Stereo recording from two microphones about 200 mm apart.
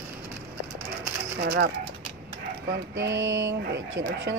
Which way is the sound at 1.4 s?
55° right (ahead or behind).